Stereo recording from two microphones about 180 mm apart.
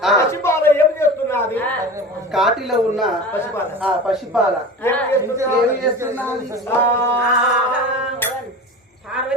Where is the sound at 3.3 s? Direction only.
10° left (ahead or behind).